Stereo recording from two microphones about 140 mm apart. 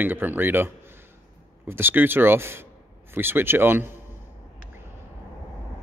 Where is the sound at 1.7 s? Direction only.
15° right (ahead or behind).